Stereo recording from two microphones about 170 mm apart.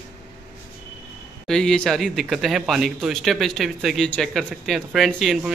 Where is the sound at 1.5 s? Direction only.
5° left (ahead or behind).